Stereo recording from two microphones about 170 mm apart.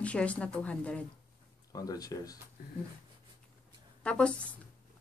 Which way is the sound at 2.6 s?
60° left (ahead or behind).